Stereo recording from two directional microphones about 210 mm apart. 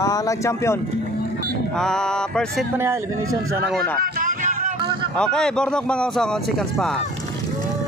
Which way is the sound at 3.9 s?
40° right (ahead or behind).